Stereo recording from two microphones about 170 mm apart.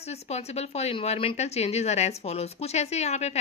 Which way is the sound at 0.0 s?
40° left (ahead or behind).